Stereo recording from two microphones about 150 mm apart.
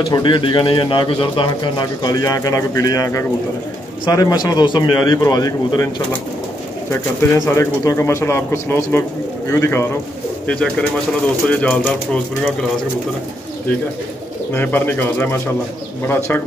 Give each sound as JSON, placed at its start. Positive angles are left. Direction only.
{"t": 0.1, "sound": "speech", "side_deg": 30}
{"t": 6.9, "sound": "speech", "side_deg": 20}
{"t": 10.4, "sound": "speech", "side_deg": 5}
{"t": 14.5, "sound": "speech", "side_deg": 10}